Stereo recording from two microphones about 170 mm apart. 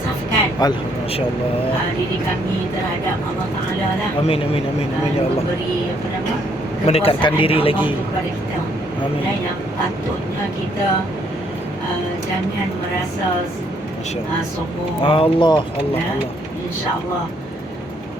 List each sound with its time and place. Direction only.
0.6 s speech: 25° left (ahead or behind)
4.2 s a man's voice: 35° left (ahead or behind)
6.8 s a man's voice: 35° left (ahead or behind)
15.0 s speech: 30° left (ahead or behind)